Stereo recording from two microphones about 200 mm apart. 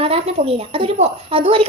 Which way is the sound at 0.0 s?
30° right (ahead or behind).